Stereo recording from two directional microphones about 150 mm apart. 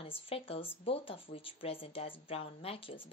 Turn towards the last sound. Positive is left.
turn(degrees=40)  # may be behind; listen again after turning